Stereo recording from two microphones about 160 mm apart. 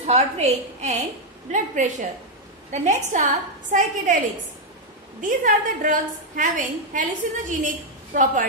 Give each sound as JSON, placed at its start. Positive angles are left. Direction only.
{"t": 0.0, "sound": "a woman's voice", "side_deg": -40}
{"t": 5.2, "sound": "a woman's voice", "side_deg": -55}